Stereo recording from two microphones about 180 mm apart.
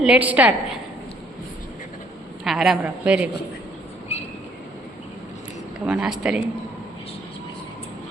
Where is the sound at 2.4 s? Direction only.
Centre (ahead or behind).